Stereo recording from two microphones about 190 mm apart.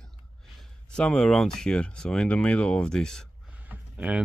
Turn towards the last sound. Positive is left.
turn(degrees=-5)  # may be behind; listen again after turning